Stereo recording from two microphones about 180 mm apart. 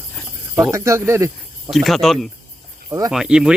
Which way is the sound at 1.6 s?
Centre (ahead or behind).